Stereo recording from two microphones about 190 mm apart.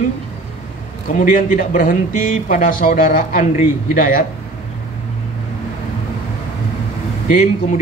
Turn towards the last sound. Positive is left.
turn(degrees=40)  # may be behind; listen again after turning